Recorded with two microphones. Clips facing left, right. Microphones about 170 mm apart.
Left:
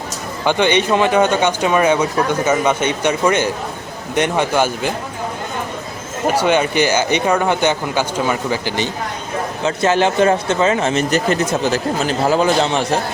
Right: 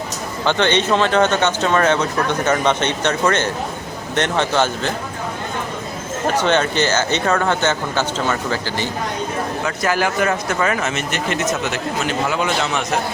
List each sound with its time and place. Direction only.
0.4 s speech: 10° left (ahead or behind)
6.2 s speech: 10° left (ahead or behind); by 13.0 s 30° left (ahead or behind)